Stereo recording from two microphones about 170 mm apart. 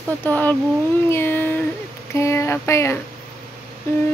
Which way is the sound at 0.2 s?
10° left (ahead or behind).